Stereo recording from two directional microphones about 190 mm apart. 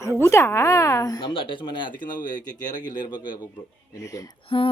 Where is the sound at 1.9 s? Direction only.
45° left (ahead or behind).